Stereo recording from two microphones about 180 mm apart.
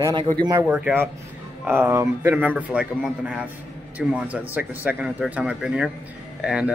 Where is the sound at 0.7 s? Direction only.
5° right (ahead or behind).